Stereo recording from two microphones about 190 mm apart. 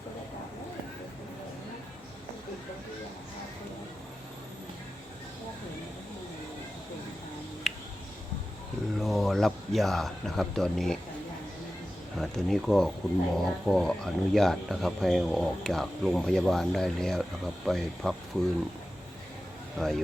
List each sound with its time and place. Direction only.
7.6 s music: centre (ahead or behind)
9.0 s speech: centre (ahead or behind)
12.1 s speech: centre (ahead or behind)
19.8 s speech: centre (ahead or behind)